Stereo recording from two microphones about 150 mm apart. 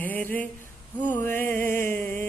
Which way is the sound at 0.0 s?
10° left (ahead or behind).